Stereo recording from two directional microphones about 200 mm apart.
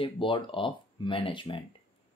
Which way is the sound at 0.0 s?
25° left (ahead or behind).